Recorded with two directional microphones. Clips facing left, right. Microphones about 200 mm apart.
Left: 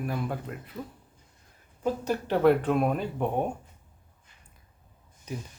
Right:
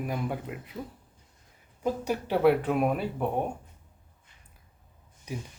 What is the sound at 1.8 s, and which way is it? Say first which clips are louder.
Speech: left 1 dB; 10° right (ahead or behind).